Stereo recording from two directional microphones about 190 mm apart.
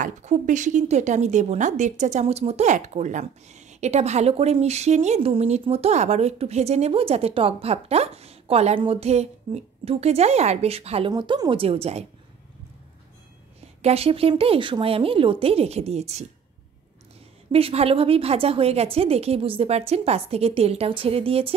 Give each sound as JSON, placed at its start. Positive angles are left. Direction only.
{"t": 0.0, "sound": "speech", "side_deg": -40}
{"t": 13.8, "sound": "speech", "side_deg": -30}
{"t": 17.5, "sound": "speech", "side_deg": -30}